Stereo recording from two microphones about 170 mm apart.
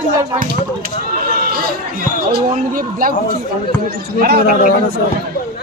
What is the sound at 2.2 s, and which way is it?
Speech, 55° right (ahead or behind).